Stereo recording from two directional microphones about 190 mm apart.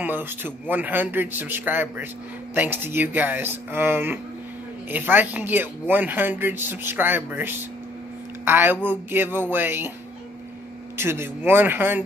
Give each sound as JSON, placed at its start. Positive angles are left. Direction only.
{"t": 0.0, "sound": "speech", "side_deg": -10}
{"t": 11.0, "sound": "speech", "side_deg": -10}